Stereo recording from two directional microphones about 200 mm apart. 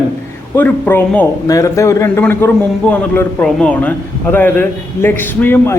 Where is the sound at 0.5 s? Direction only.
10° left (ahead or behind).